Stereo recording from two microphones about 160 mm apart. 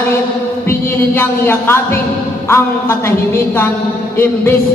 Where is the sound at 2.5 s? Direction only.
15° left (ahead or behind).